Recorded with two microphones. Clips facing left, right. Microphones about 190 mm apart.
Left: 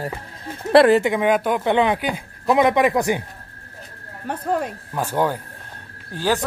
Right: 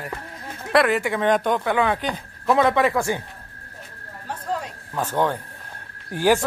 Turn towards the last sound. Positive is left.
turn(degrees=-15)  # may be behind; listen again after turning